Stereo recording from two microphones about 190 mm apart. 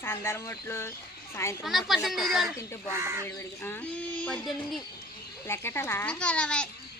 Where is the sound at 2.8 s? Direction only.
15° right (ahead or behind).